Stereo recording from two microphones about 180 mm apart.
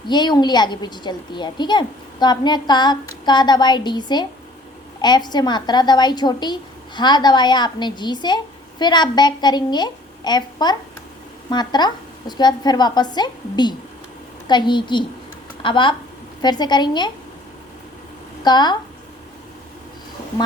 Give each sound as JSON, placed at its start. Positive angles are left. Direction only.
{"t": 0.1, "sound": "a child's voice", "side_deg": 25}
{"t": 18.4, "sound": "a child's voice", "side_deg": 25}